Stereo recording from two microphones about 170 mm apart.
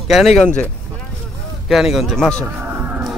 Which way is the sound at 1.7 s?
Centre (ahead or behind).